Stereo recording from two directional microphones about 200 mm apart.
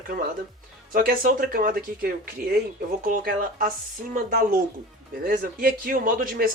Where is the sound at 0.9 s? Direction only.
45° right (ahead or behind).